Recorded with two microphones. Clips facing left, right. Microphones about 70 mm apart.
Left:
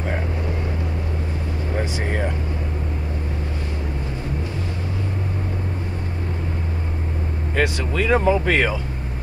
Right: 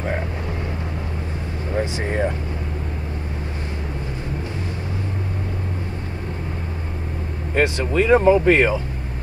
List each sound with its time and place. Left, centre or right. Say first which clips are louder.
2.0 s vehicle: right 3 dB; right
7.5 s speech: right 3 dB; right